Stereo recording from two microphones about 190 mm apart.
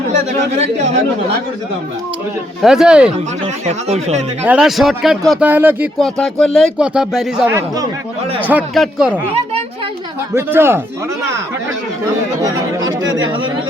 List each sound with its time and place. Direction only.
2.6 s speech: 5° right (ahead or behind)
3.7 s speech: 35° right (ahead or behind)
4.4 s speech: 5° right (ahead or behind)
6.0 s speech: 5° left (ahead or behind)
10.3 s speech: 10° right (ahead or behind)
12.4 s chatter: 20° right (ahead or behind)